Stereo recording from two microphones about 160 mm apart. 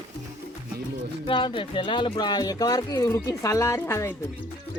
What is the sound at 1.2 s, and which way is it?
Speech, 30° left (ahead or behind).